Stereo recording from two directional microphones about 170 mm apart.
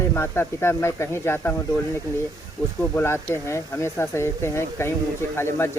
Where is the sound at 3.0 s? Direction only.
15° left (ahead or behind).